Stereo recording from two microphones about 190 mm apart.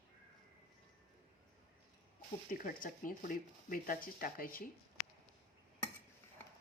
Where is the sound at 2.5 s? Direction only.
45° left (ahead or behind).